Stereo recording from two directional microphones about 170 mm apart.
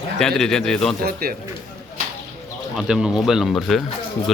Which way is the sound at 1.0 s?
60° right (ahead or behind).